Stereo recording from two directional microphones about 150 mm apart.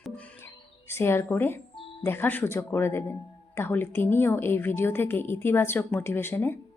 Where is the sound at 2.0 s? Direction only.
15° left (ahead or behind).